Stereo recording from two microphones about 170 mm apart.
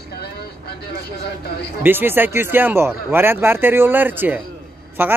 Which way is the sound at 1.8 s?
10° right (ahead or behind).